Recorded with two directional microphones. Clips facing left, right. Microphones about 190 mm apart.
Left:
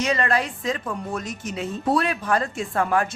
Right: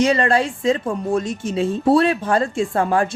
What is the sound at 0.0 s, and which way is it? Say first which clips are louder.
A woman's voice: right 6 dB; 30° right (ahead or behind).